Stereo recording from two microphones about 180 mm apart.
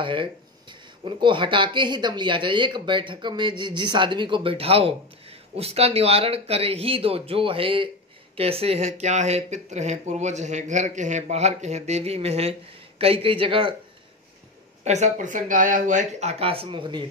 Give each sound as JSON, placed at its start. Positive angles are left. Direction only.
{"t": 0.0, "sound": "speech", "side_deg": -30}
{"t": 14.9, "sound": "speech", "side_deg": -40}